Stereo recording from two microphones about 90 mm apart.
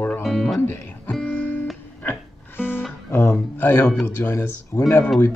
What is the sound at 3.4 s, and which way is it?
Speech, 20° left (ahead or behind).